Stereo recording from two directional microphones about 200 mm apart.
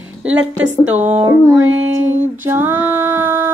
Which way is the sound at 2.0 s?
10° right (ahead or behind).